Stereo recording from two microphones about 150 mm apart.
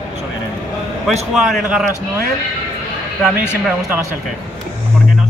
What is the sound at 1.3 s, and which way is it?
Speech, centre (ahead or behind).